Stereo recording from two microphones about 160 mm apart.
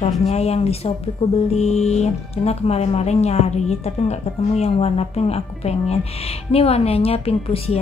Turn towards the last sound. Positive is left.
turn(degrees=40)  # may be behind; listen again after turning